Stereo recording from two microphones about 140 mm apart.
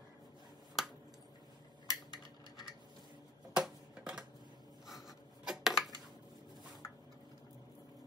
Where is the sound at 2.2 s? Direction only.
30° left (ahead or behind).